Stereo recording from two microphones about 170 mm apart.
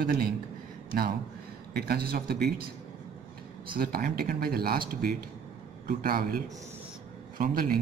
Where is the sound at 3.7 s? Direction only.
60° right (ahead or behind).